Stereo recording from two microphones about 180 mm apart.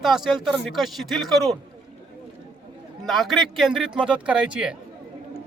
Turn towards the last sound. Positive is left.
turn(degrees=-5)  # may be behind; listen again after turning